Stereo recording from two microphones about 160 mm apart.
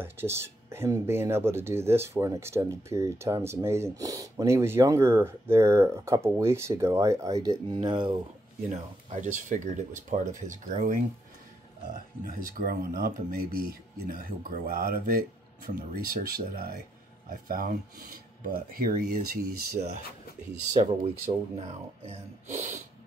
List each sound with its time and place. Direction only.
0.0 s speech: 15° right (ahead or behind)
9.2 s speech: 55° right (ahead or behind)
12.3 s speech: 60° right (ahead or behind)
20.7 s speech: 40° right (ahead or behind)